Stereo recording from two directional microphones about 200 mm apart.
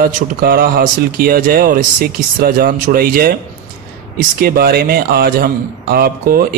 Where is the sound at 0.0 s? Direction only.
50° right (ahead or behind).